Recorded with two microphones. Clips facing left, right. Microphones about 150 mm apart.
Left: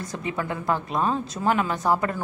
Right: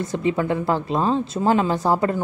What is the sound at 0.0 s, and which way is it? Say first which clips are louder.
A woman's voice: right 8 dB; 25° right (ahead or behind).